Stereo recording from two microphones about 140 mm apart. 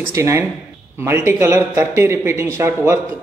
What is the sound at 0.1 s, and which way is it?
A man's voice, 20° right (ahead or behind).